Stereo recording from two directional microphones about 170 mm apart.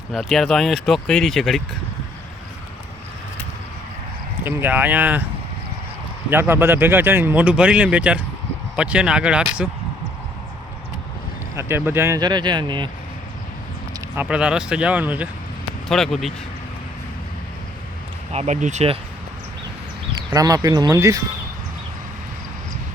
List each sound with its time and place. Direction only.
0.1 s speech: centre (ahead or behind)
4.4 s speech: 10° right (ahead or behind)
6.3 s speech: 15° right (ahead or behind)
11.5 s speech: 15° right (ahead or behind)
14.2 s speech: 5° right (ahead or behind)
15.9 s speech: centre (ahead or behind)
18.3 s speech: 40° right (ahead or behind)
20.1 s speech: 20° right (ahead or behind)